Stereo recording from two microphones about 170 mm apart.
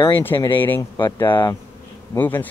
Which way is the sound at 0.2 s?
10° left (ahead or behind).